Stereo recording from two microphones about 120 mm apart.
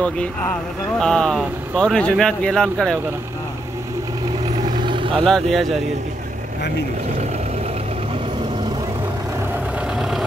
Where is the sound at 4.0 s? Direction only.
30° right (ahead or behind); by 5.3 s 45° right (ahead or behind).